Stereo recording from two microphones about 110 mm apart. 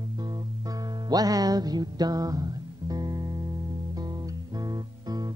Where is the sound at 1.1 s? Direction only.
35° right (ahead or behind).